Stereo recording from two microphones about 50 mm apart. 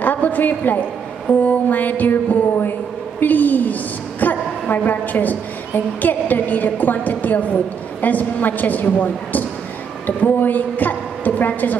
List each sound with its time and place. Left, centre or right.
0.0 s a woman's voice: left
4.2 s a sound: left
6.0 s a woman's voice: left